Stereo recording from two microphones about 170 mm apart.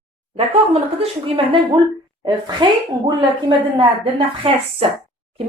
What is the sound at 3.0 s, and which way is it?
A woman's voice, 30° right (ahead or behind).